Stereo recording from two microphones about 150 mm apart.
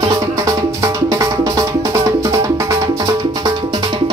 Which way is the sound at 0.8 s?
25° right (ahead or behind).